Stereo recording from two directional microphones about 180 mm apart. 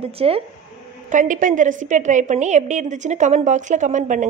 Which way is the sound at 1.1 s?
45° right (ahead or behind).